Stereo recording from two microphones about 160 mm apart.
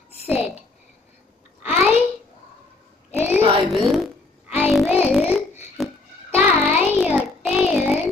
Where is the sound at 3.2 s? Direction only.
5° right (ahead or behind).